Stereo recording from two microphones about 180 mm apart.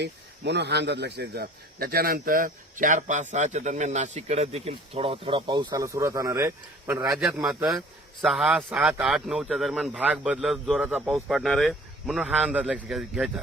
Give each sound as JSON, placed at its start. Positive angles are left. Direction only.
{"t": 0.0, "sound": "speech", "side_deg": -70}
{"t": 7.4, "sound": "speech", "side_deg": 0}